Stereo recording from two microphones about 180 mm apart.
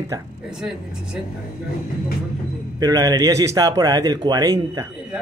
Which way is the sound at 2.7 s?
20° right (ahead or behind).